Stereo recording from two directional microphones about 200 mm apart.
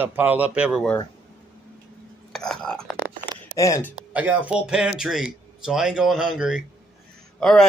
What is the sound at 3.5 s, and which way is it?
Speech, 15° left (ahead or behind).